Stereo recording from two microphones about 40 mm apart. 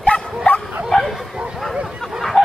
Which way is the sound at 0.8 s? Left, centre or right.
Centre.